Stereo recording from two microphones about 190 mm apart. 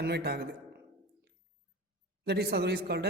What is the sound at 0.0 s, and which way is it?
Speech, 55° right (ahead or behind).